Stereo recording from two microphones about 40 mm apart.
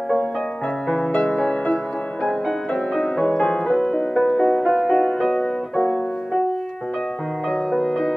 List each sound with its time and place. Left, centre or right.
0.8 s music: centre
2.7 s music: centre
4.1 s music: centre
7.7 s music: centre